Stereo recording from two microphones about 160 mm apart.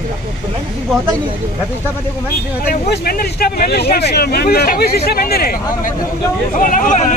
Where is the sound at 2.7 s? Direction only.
70° left (ahead or behind).